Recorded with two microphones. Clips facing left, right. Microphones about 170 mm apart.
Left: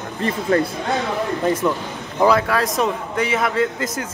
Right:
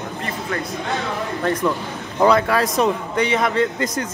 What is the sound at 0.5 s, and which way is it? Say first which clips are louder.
Speech: left 11 dB; 35° left (ahead or behind).